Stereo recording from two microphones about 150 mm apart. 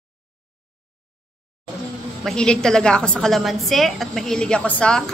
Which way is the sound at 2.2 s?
5° left (ahead or behind).